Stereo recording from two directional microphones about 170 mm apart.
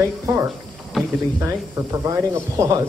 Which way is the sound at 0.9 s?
Centre (ahead or behind).